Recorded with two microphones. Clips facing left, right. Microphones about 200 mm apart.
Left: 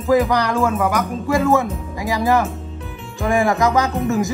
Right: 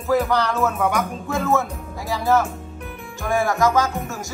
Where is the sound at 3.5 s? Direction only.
15° left (ahead or behind).